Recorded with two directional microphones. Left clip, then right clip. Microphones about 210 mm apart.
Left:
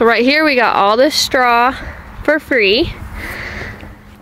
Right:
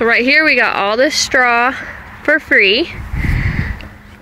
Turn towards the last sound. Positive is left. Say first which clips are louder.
# right 2 dB
turn(degrees=20)  # may be behind; listen again after turning